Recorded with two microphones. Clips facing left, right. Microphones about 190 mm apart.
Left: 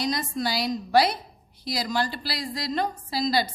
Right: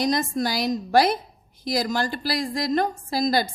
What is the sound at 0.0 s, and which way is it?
A woman's voice, 50° right (ahead or behind).